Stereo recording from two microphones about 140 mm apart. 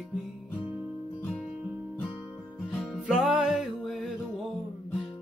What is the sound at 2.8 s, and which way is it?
Music, centre (ahead or behind).